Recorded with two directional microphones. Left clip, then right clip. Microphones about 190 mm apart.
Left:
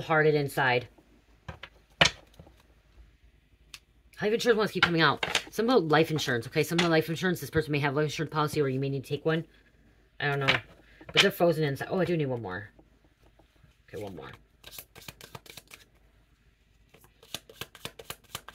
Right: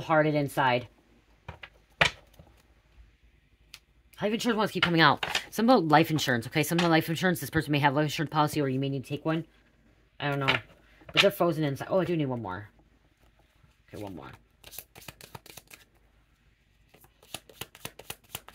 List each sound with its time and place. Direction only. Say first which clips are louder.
0.0 s speech: left 1 dB; 40° right (ahead or behind)
4.1 s speech: left 4 dB; 40° right (ahead or behind)
13.9 s shuffling cards: left 2 dB; 25° right (ahead or behind)
17.3 s shuffling cards: left 2 dB; 25° right (ahead or behind)